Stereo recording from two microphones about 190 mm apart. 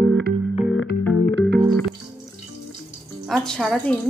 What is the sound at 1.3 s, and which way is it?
Music, 65° right (ahead or behind).